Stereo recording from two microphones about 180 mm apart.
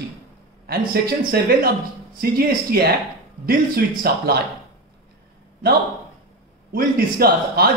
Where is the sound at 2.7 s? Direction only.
55° right (ahead or behind).